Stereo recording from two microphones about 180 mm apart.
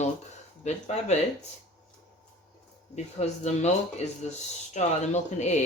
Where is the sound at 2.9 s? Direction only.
40° left (ahead or behind).